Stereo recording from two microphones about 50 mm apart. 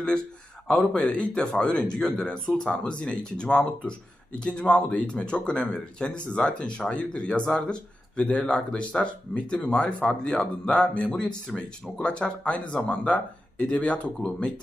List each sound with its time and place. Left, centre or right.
0.9 s speech: left